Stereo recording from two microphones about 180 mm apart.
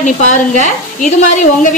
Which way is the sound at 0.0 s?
45° left (ahead or behind).